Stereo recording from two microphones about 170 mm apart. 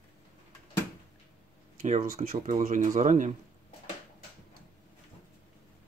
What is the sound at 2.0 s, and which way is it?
Speech, 55° right (ahead or behind).